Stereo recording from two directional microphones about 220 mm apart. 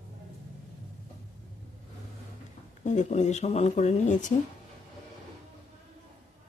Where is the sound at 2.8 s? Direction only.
30° left (ahead or behind).